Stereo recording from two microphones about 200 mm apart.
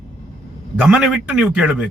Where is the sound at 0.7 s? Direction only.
5° right (ahead or behind).